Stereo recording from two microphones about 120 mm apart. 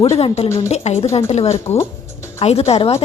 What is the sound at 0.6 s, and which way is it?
A woman's voice, 65° left (ahead or behind).